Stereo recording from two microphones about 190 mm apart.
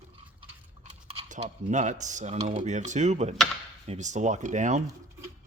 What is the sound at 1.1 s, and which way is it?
Speech, 35° right (ahead or behind).